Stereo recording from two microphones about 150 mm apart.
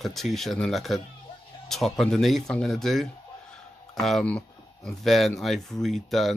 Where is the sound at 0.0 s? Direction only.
Centre (ahead or behind).